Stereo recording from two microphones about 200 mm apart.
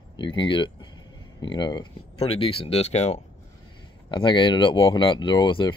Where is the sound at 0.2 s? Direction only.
25° left (ahead or behind).